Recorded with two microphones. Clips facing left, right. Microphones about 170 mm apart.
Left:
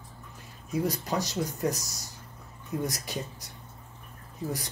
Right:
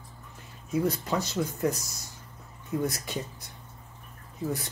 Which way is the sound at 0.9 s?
40° left (ahead or behind).